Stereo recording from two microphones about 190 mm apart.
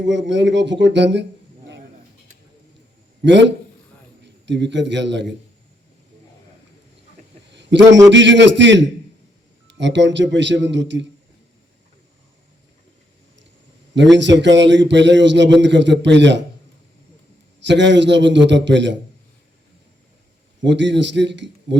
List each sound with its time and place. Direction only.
0.0 s a man's voice: 70° right (ahead or behind)
3.2 s a man's voice: 70° right (ahead or behind)
7.5 s a sound: 65° right (ahead or behind)
8.1 s a man's voice: 70° right (ahead or behind)
13.9 s a man's voice: 70° right (ahead or behind)
17.6 s a man's voice: 70° right (ahead or behind)
20.7 s a man's voice: 70° right (ahead or behind)